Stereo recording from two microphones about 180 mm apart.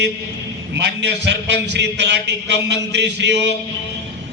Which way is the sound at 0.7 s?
70° right (ahead or behind).